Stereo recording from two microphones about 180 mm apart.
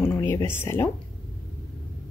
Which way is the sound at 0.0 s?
10° left (ahead or behind).